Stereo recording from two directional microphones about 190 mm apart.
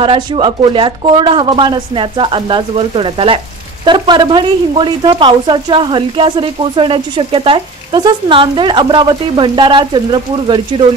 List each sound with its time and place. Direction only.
0.0 s speech: 25° right (ahead or behind)